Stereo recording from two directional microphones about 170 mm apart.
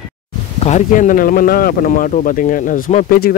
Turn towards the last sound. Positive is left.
turn(degrees=60)  # may be behind; listen again after turning